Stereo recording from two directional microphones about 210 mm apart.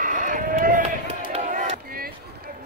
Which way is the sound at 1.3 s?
35° right (ahead or behind).